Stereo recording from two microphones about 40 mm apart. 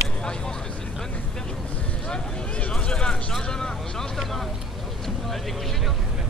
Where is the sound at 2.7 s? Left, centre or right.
Left.